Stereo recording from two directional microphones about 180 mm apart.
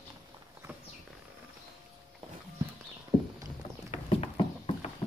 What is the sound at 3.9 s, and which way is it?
Horse, 35° left (ahead or behind).